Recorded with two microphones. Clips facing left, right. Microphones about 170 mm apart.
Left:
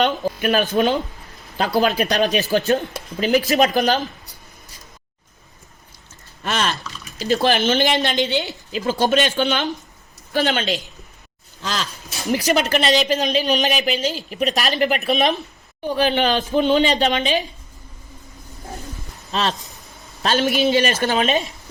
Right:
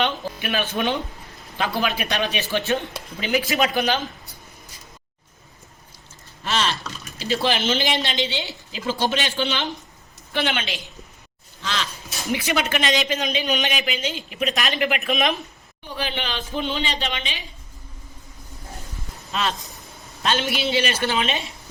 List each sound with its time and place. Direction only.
0.0 s speech: 45° left (ahead or behind)
6.4 s a sound: 50° left (ahead or behind)
7.3 s a woman's voice: 45° left (ahead or behind)
19.3 s a woman's voice: 35° left (ahead or behind)